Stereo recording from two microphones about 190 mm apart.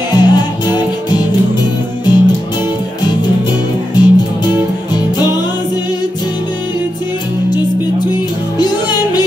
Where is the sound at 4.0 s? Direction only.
20° left (ahead or behind).